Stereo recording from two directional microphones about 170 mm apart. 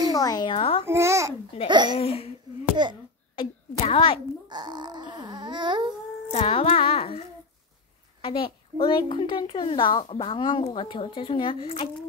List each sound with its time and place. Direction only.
0.1 s speech: 20° left (ahead or behind)
0.8 s a child's voice: 15° right (ahead or behind)
1.7 s babbling: 25° right (ahead or behind)
2.0 s a child's voice: 35° left (ahead or behind)
3.3 s a woman's voice: 35° left (ahead or behind)
4.5 s babbling: 25° right (ahead or behind)
6.3 s a child's voice: 35° left (ahead or behind)